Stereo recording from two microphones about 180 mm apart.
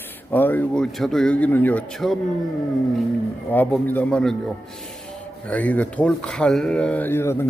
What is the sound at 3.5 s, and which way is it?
Speech, 10° left (ahead or behind).